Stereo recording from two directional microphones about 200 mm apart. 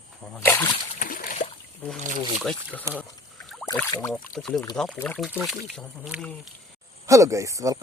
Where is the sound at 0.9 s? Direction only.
45° left (ahead or behind).